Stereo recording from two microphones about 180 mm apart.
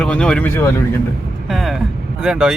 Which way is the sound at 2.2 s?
5° right (ahead or behind).